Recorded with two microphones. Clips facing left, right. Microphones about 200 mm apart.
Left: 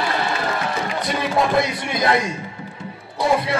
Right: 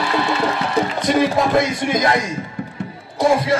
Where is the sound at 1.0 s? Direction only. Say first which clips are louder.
Right 4 dB; 45° right (ahead or behind).